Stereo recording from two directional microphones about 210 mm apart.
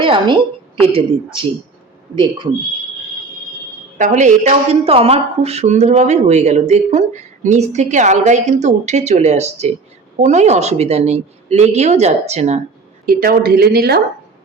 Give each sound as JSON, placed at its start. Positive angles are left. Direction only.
{"t": 0.0, "sound": "a woman's voice", "side_deg": -25}
{"t": 3.9, "sound": "a woman's voice", "side_deg": -35}
{"t": 13.1, "sound": "a woman's voice", "side_deg": -45}